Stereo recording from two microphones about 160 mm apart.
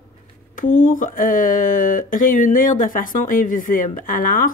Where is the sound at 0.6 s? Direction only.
60° left (ahead or behind).